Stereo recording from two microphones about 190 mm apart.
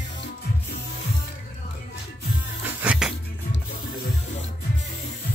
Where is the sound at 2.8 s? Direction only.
5° right (ahead or behind).